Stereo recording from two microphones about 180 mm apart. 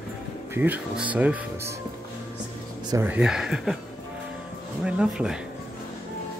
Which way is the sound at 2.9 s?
10° right (ahead or behind).